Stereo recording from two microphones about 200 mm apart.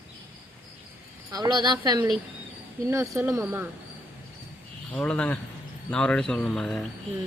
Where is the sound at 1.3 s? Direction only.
20° right (ahead or behind).